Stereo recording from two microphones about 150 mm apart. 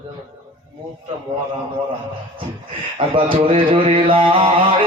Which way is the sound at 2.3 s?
35° right (ahead or behind).